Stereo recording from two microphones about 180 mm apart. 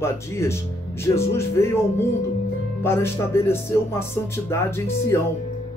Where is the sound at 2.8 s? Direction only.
15° left (ahead or behind).